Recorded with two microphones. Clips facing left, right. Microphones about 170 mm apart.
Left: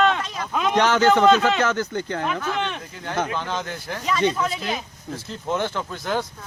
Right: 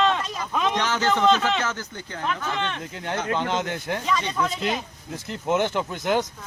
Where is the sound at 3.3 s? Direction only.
20° right (ahead or behind).